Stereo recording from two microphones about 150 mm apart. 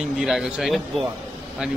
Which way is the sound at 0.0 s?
5° right (ahead or behind).